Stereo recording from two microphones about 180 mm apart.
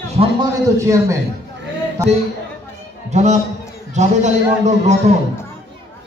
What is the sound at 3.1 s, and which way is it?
Speech, 40° right (ahead or behind).